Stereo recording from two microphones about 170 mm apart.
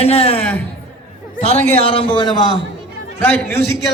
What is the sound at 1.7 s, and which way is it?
Speech, 35° left (ahead or behind).